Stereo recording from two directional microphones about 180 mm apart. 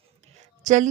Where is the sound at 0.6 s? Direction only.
45° right (ahead or behind).